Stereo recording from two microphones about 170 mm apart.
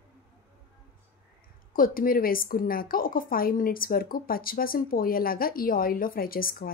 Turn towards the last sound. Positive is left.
turn(degrees=60)  # may be behind; listen again after turning